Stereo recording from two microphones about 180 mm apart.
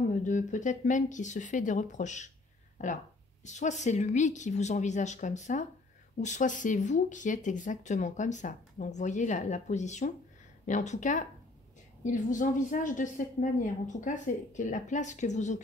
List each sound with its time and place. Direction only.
0.1 s a woman's voice: 45° left (ahead or behind)